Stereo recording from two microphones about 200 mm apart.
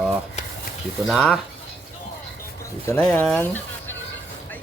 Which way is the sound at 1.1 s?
Centre (ahead or behind).